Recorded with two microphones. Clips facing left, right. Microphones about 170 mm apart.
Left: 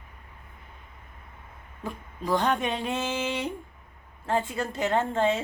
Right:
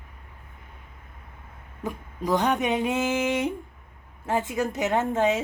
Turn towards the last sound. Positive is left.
turn(degrees=-10)  # may be behind; listen again after turning